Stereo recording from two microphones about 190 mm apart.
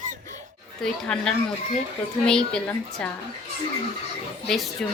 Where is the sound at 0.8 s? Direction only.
5° left (ahead or behind).